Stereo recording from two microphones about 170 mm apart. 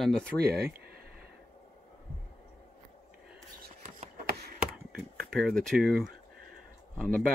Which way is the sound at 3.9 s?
50° right (ahead or behind).